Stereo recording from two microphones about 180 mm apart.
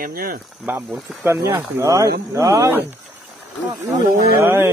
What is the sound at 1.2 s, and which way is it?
Speech, 15° right (ahead or behind).